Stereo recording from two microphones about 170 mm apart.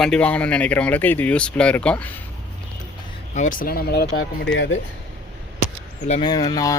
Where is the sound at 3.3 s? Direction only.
50° left (ahead or behind); by 4.7 s 80° left.